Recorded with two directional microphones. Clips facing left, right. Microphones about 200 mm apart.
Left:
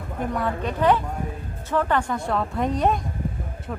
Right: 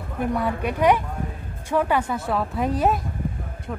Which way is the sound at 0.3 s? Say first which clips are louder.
Right 2 dB; 10° right (ahead or behind).